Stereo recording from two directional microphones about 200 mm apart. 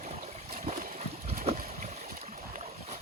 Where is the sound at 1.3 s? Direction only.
30° right (ahead or behind).